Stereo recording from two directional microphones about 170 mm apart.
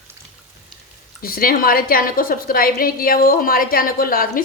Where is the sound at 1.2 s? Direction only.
60° left (ahead or behind).